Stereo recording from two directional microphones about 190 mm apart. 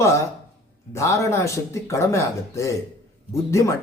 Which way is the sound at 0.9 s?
15° left (ahead or behind).